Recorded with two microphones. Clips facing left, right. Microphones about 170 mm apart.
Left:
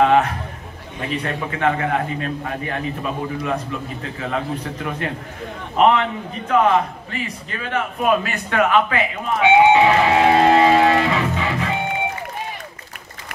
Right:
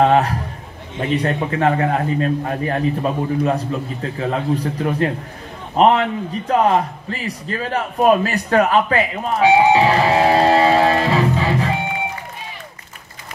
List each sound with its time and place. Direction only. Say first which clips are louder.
0.0 s a man's voice: right 1 dB; 35° right (ahead or behind)